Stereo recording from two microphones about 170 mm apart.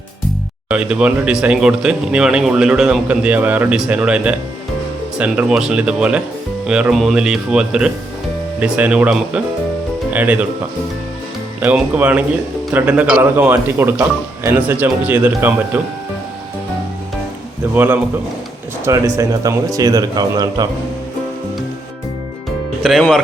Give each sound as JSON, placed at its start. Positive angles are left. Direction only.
{"t": 0.7, "sound": "speech", "side_deg": -5}
{"t": 11.6, "sound": "speech", "side_deg": -10}
{"t": 17.7, "sound": "a man's voice", "side_deg": -10}
{"t": 22.8, "sound": "speech", "side_deg": 0}